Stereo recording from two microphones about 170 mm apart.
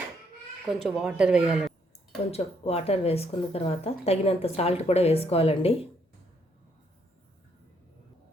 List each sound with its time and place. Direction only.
0.7 s speech: centre (ahead or behind)
2.3 s speech: 35° left (ahead or behind)